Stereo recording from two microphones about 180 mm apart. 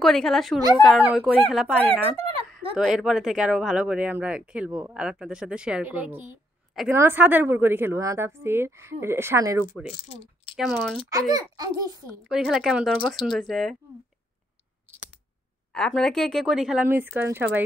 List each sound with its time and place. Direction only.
0.0 s a woman's voice: centre (ahead or behind); by 9.7 s 15° right (ahead or behind)
9.8 s speech: 35° left (ahead or behind)
10.5 s speech: centre (ahead or behind)
11.1 s a child's voice: 20° right (ahead or behind)
12.3 s speech: 5° right (ahead or behind)
15.7 s speech: 5° left (ahead or behind)